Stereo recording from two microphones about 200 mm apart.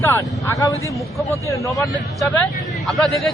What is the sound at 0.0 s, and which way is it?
Speech, 15° left (ahead or behind).